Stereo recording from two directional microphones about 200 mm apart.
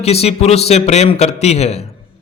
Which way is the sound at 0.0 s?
30° left (ahead or behind).